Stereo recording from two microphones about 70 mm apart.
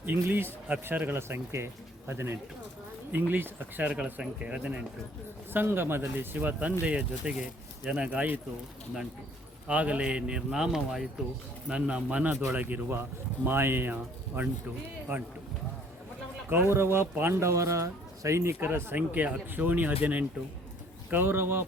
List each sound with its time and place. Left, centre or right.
0.0 s speech: right
3.9 s speech: centre
5.5 s speech: right
9.6 s speech: centre
11.7 s speech: centre; by 15.2 s right
16.7 s speech: right
17.5 s speech: right